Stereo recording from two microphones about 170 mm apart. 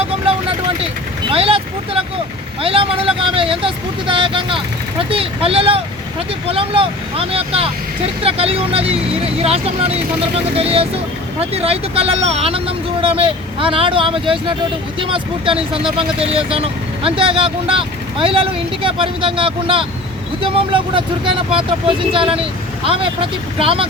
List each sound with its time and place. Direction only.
0.0 s vehicle: 35° right (ahead or behind)
1.3 s speech: 35° right (ahead or behind)